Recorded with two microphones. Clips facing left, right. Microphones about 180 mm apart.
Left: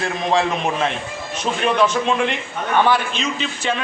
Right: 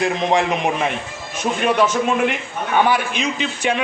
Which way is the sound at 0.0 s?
20° right (ahead or behind).